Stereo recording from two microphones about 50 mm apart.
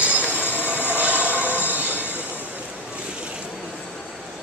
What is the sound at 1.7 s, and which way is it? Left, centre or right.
Train, right.